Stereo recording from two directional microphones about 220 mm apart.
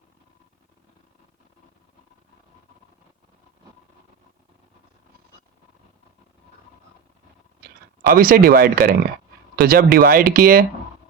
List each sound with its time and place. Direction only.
8.1 s speech: 40° right (ahead or behind)